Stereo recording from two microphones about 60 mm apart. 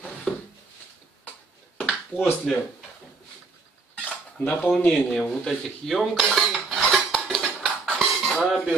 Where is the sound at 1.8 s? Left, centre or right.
Left.